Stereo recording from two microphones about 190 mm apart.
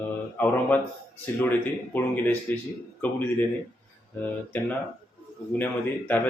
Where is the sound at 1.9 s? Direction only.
10° left (ahead or behind).